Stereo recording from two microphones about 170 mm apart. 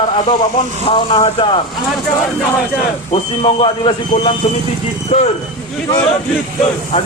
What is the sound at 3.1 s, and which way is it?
A man's voice, 30° left (ahead or behind).